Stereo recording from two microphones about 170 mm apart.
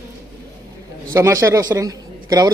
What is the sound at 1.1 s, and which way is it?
A man's voice, 15° right (ahead or behind).